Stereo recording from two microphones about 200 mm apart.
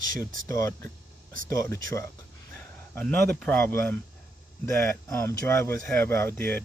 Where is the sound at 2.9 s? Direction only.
5° left (ahead or behind).